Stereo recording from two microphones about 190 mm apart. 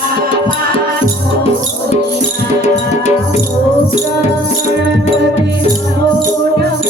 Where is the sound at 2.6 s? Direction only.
35° left (ahead or behind).